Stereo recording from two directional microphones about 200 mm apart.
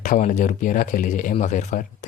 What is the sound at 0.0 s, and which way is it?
Speech, 40° left (ahead or behind).